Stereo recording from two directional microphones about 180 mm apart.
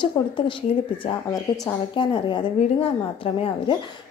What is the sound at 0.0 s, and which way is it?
A woman's voice, 25° left (ahead or behind).